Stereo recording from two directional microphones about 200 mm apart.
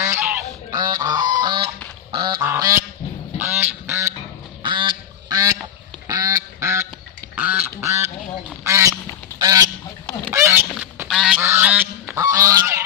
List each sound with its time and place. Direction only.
0.7 s goose: 20° right (ahead or behind)
2.1 s duck: 20° right (ahead or behind)
2.5 s goose: 15° right (ahead or behind)
3.3 s duck: 10° right (ahead or behind)
4.6 s goose: 25° right (ahead or behind)
7.3 s duck: 10° right (ahead or behind)
9.4 s goose: 20° right (ahead or behind)